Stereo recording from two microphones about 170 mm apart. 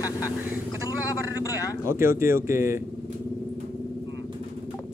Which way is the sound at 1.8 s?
15° right (ahead or behind).